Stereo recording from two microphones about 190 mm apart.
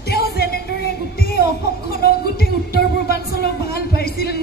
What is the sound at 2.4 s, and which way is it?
Music, 55° left (ahead or behind).